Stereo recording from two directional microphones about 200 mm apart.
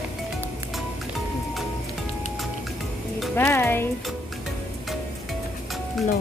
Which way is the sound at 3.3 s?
10° left (ahead or behind).